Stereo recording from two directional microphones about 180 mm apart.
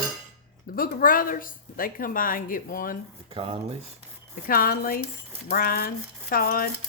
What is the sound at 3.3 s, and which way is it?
Speech, 30° right (ahead or behind).